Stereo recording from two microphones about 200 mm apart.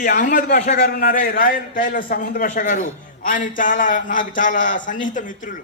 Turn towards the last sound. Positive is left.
turn(degrees=40)  # may be behind; listen again after turning